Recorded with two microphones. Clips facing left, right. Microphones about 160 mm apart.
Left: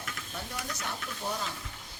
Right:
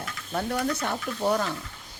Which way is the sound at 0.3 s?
65° right (ahead or behind).